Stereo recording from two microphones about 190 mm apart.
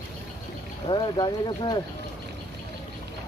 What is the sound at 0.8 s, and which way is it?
Speech, 25° left (ahead or behind).